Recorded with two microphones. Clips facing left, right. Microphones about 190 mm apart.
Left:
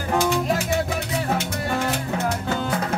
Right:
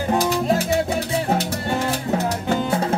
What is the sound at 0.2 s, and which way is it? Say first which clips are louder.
Music: right 2 dB; 35° right (ahead or behind).